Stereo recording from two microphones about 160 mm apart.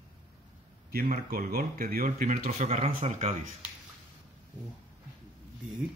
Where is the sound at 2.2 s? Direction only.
50° right (ahead or behind).